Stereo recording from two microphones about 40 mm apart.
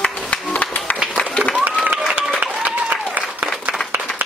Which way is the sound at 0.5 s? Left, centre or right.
Left.